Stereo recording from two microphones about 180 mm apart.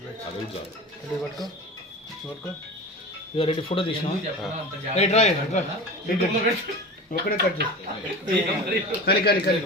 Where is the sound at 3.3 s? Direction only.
30° left (ahead or behind).